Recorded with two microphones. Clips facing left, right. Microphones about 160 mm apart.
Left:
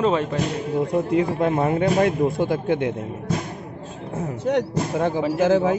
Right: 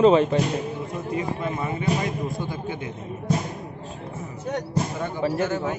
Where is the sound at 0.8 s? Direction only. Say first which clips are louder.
Left 8 dB; 75° left (ahead or behind).